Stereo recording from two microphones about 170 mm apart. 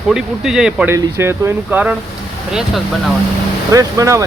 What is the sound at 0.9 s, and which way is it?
Speech, 15° right (ahead or behind).